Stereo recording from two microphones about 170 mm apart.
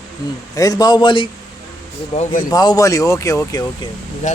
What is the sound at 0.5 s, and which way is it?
Speech, 20° left (ahead or behind).